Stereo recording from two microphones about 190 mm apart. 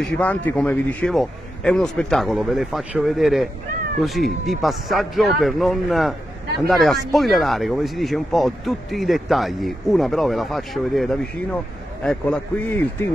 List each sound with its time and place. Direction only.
0.2 s speech: 10° left (ahead or behind)